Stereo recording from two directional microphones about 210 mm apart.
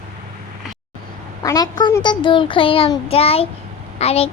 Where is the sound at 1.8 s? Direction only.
20° left (ahead or behind).